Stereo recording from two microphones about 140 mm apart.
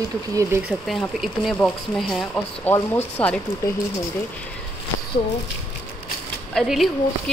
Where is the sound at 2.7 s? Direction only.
10° left (ahead or behind).